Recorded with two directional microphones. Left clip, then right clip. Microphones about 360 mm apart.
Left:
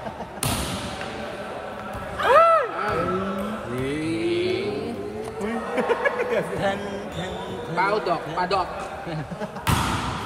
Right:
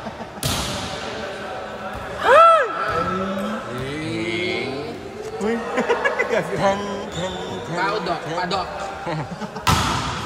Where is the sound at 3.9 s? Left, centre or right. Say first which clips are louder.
Left 2 dB; left.